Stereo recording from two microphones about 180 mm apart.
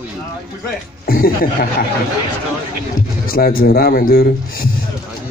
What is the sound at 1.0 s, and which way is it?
Speech, 55° left (ahead or behind).